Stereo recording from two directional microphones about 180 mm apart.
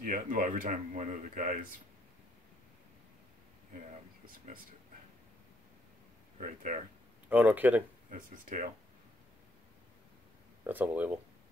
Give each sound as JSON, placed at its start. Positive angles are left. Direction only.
{"t": 0.0, "sound": "speech", "side_deg": -50}
{"t": 6.3, "sound": "speech", "side_deg": -45}
{"t": 7.2, "sound": "speech", "side_deg": -10}
{"t": 8.1, "sound": "speech", "side_deg": -45}
{"t": 10.7, "sound": "speech", "side_deg": -10}